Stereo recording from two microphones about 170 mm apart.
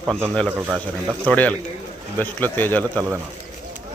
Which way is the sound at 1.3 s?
10° left (ahead or behind).